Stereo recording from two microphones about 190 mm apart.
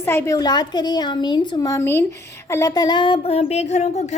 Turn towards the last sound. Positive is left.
turn(degrees=35)  # may be behind; listen again after turning